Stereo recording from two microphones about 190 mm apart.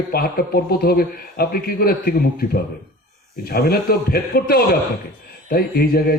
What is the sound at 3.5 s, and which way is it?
A man's voice, 55° left (ahead or behind).